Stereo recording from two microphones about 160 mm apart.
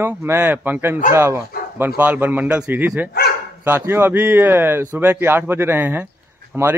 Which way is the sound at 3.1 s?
75° left (ahead or behind).